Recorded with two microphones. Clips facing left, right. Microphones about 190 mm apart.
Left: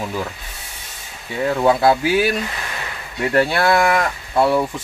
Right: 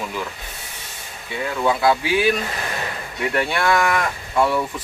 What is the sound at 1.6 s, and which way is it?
Speech, 35° left (ahead or behind).